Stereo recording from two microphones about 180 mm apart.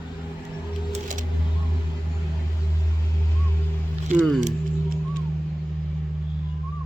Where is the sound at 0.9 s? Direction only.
45° right (ahead or behind).